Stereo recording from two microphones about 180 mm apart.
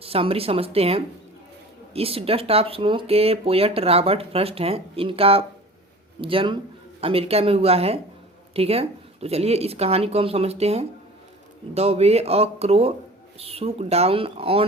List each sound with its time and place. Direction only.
0.0 s speech: 30° right (ahead or behind)